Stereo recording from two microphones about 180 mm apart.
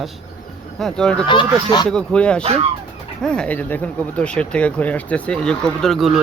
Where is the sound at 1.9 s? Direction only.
5° left (ahead or behind).